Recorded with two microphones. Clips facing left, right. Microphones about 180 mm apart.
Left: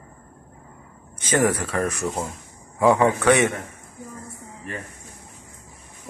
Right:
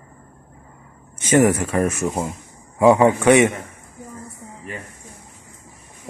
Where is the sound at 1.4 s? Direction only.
10° right (ahead or behind).